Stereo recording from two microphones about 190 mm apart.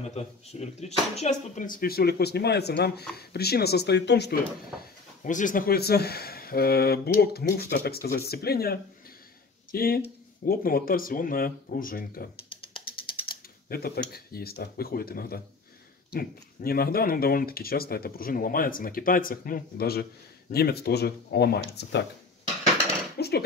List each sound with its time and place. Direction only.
0.0 s speech: 35° left (ahead or behind); by 4.4 s 60° left (ahead or behind)
5.2 s speech: 45° left (ahead or behind)
13.7 s speech: 55° left (ahead or behind)
23.1 s cutlery: 60° left (ahead or behind)